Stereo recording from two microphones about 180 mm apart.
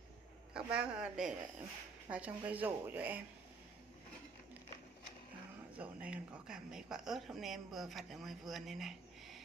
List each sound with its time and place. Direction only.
0.5 s a woman's voice: 5° right (ahead or behind)
5.8 s speech: 5° right (ahead or behind)